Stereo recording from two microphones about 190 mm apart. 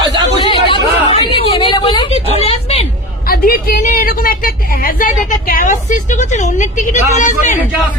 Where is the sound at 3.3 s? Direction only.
50° left (ahead or behind).